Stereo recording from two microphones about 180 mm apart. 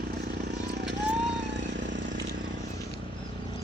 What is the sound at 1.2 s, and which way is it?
Vehicle, 75° right (ahead or behind).